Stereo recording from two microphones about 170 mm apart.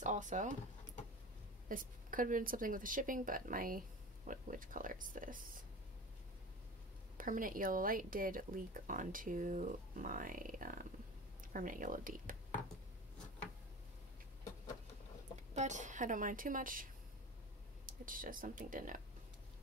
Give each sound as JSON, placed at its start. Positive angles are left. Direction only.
{"t": 0.0, "sound": "drawer open or close", "side_deg": -45}
{"t": 1.7, "sound": "speech", "side_deg": -55}
{"t": 7.2, "sound": "speech", "side_deg": -55}
{"t": 15.3, "sound": "a woman's voice", "side_deg": -45}